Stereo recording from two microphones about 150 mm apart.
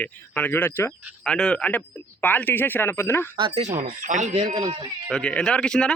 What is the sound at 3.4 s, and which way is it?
Speech, 35° right (ahead or behind).